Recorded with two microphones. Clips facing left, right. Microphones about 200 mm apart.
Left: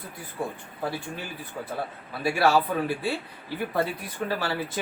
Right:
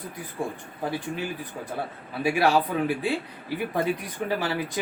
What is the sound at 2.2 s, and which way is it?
Speech, 15° right (ahead or behind).